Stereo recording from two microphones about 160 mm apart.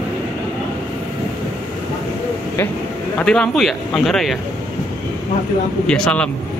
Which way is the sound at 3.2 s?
5° left (ahead or behind).